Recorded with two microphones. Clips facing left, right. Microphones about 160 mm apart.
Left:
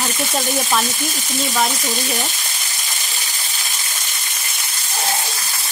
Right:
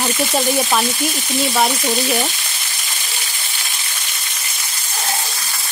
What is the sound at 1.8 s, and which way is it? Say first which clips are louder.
Frying: right 5 dB; 45° right (ahead or behind).